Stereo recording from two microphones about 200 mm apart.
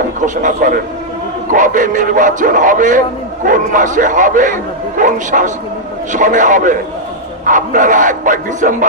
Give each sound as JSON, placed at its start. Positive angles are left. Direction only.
{"t": 0.2, "sound": "a man's voice", "side_deg": -40}